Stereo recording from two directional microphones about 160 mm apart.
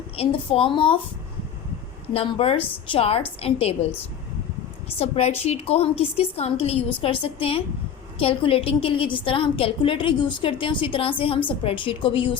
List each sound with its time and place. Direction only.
0.2 s a woman's voice: 35° left (ahead or behind)
2.1 s a woman's voice: 35° left (ahead or behind)
4.9 s a woman's voice: 40° left (ahead or behind)